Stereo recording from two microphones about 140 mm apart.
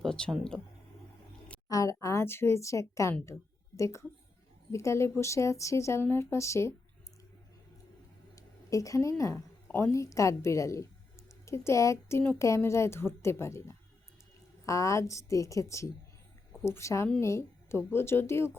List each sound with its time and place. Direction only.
0.0 s speech: 5° left (ahead or behind)
1.7 s a woman's voice: 25° left (ahead or behind)
8.4 s a woman's voice: 25° left (ahead or behind)